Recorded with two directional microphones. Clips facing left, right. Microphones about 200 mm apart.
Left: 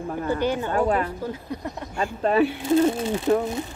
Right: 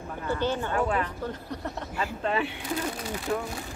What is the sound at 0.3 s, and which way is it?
Speech, 15° left (ahead or behind).